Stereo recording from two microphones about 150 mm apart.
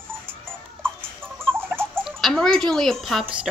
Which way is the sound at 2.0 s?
Centre (ahead or behind).